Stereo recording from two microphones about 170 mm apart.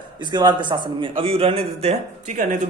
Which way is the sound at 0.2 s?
25° right (ahead or behind).